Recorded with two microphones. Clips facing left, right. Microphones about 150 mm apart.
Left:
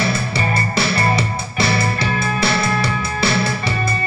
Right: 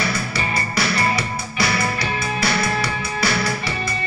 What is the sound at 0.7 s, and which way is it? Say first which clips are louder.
Music: left 2 dB; 25° left (ahead or behind).